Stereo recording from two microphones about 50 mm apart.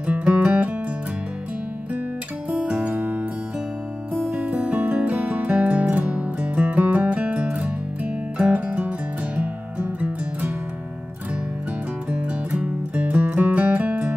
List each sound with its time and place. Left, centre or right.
0.0 s music: right
2.5 s guitar: right
3.0 s music: right
4.3 s music: right
12.1 s music: right